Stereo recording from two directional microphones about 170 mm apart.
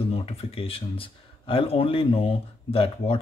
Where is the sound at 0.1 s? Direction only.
35° left (ahead or behind).